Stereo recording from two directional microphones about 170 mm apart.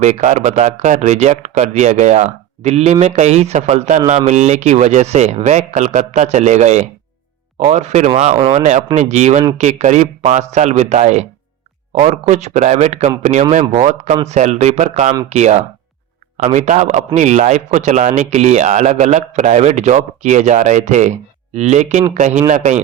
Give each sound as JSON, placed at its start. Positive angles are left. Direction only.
{"t": 0.0, "sound": "speech", "side_deg": -45}